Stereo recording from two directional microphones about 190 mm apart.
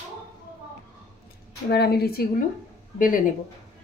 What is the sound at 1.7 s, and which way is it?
Speech, 55° left (ahead or behind).